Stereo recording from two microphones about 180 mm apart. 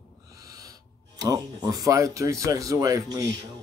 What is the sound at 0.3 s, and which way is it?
Speech, 20° right (ahead or behind).